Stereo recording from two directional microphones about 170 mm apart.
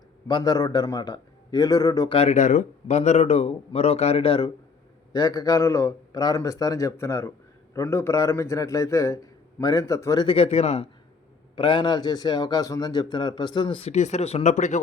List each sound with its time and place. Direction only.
0.3 s a man's voice: 25° left (ahead or behind)
2.1 s speech: 40° left (ahead or behind); by 10.2 s 20° left (ahead or behind)
10.2 s speech: 35° left (ahead or behind)
11.5 s a man's voice: 30° left (ahead or behind); by 14.8 s 45° left (ahead or behind)